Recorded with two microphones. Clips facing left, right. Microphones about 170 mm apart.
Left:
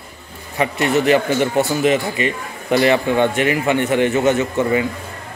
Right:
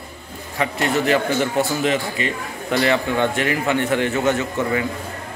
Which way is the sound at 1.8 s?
15° left (ahead or behind).